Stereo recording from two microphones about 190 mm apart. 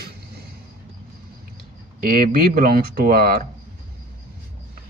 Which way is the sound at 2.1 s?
50° right (ahead or behind).